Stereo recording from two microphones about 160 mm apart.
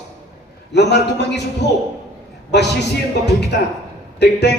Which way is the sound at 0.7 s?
90° left.